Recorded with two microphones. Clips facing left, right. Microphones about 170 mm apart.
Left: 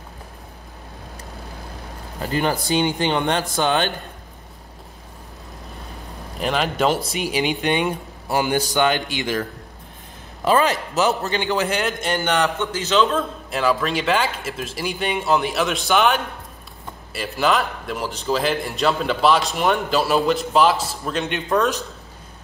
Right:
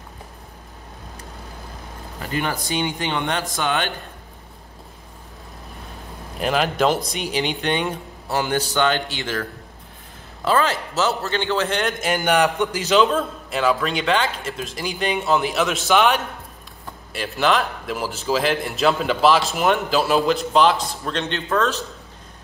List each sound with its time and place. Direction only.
2.3 s speech: 35° left (ahead or behind)
6.4 s speech: centre (ahead or behind)
12.0 s a man's voice: 10° right (ahead or behind); by 21.8 s 15° left (ahead or behind)